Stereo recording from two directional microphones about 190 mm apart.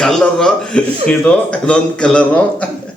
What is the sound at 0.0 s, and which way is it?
A man's voice, 5° left (ahead or behind).